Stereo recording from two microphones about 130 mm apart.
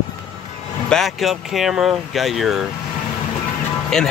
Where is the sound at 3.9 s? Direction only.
5° left (ahead or behind).